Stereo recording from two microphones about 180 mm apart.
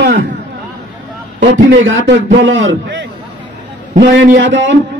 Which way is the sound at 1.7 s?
90° right.